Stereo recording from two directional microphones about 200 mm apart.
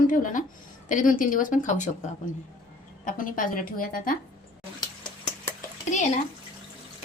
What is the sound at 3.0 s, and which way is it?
Speech, 45° left (ahead or behind).